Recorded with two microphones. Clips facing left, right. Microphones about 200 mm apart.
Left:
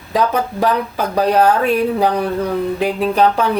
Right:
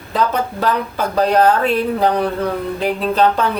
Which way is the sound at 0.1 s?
15° left (ahead or behind).